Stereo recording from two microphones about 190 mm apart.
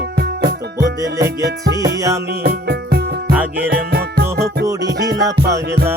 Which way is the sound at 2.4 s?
55° right (ahead or behind).